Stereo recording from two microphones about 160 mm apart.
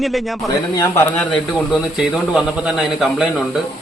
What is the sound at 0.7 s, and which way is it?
Speech, 15° left (ahead or behind).